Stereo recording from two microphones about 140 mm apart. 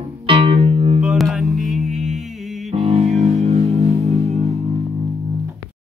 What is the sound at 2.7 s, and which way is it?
Music, 50° right (ahead or behind).